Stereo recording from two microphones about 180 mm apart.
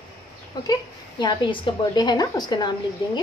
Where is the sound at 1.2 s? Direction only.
25° left (ahead or behind).